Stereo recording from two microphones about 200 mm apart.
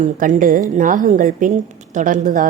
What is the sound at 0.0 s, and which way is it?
A woman's voice, 40° right (ahead or behind).